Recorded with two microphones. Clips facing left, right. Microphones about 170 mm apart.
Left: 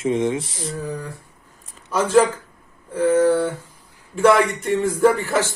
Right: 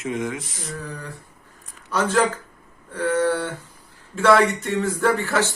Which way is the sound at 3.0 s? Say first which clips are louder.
Left 5 dB; 10° left (ahead or behind).